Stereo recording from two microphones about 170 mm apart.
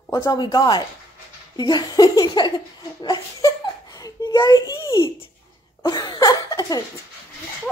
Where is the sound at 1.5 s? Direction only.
25° left (ahead or behind).